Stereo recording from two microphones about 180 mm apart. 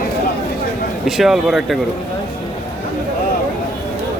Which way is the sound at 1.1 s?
Centre (ahead or behind).